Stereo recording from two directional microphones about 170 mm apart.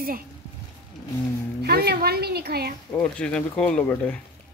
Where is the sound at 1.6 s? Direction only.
70° right (ahead or behind).